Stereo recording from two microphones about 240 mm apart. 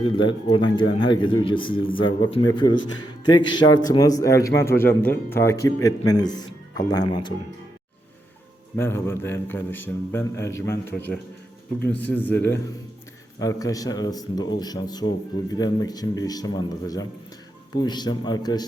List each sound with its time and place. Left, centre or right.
0.0 s a man's voice: centre
8.7 s a man's voice: centre